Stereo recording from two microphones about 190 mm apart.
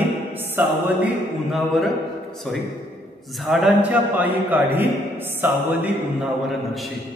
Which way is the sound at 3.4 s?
5° right (ahead or behind).